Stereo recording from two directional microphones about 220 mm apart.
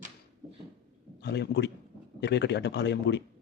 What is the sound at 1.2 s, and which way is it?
A man's voice, 50° left (ahead or behind).